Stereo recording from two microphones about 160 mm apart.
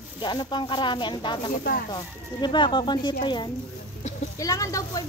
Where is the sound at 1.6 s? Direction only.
70° left (ahead or behind).